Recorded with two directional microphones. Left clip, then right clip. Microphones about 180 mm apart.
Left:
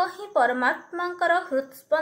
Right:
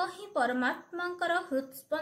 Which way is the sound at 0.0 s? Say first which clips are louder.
Left 8 dB; 20° right (ahead or behind).